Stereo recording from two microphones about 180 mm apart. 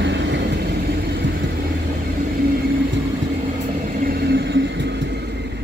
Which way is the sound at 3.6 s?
50° right (ahead or behind).